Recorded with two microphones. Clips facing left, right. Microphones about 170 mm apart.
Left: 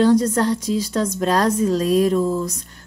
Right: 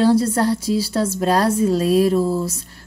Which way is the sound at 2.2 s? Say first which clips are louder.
Right 1 dB; 10° right (ahead or behind).